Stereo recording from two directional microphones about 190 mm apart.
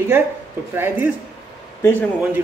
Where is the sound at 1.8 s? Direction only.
10° left (ahead or behind).